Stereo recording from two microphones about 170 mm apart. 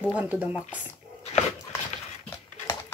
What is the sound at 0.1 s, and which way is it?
Speech, 10° right (ahead or behind).